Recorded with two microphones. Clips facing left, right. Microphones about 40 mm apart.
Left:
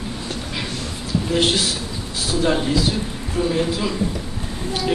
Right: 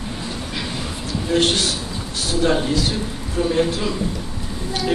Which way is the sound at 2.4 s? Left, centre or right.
Centre.